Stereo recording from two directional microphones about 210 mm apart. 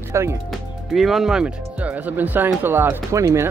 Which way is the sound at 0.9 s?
Centre (ahead or behind).